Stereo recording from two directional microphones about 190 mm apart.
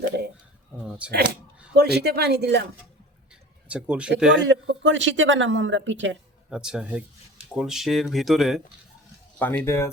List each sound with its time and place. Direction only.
0.8 s speech: 5° right (ahead or behind)
1.7 s speech: 60° right (ahead or behind)
3.7 s speech: 5° right (ahead or behind)
4.4 s a man's voice: 70° right (ahead or behind)
6.5 s speech: 5° right (ahead or behind)
9.4 s speech: 10° left (ahead or behind)